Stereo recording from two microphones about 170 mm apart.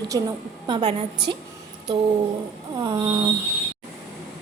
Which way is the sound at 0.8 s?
40° right (ahead or behind).